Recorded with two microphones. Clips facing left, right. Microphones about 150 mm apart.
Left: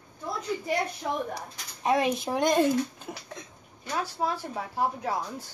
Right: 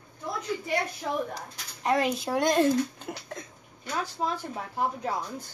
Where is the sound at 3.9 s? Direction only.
5° left (ahead or behind).